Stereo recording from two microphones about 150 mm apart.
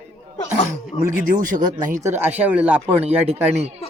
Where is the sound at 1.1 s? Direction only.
65° right (ahead or behind).